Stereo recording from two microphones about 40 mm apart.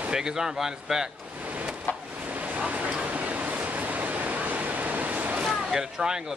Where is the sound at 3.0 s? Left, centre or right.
Right.